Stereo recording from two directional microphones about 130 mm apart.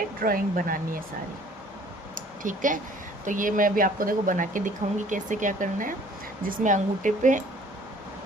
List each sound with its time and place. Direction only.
0.2 s speech: 90° right
2.1 s a sound: 90° right
3.2 s speech: 90° right